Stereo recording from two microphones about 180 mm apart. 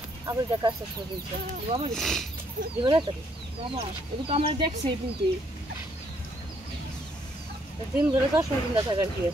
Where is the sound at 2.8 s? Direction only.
30° right (ahead or behind).